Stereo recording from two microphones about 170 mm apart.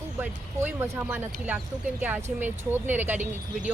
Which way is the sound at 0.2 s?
15° right (ahead or behind).